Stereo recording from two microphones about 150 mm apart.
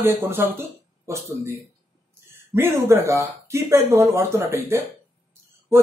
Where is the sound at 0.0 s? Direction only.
15° right (ahead or behind).